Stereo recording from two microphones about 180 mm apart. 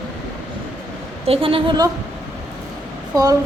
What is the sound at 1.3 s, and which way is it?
Speech, 30° right (ahead or behind).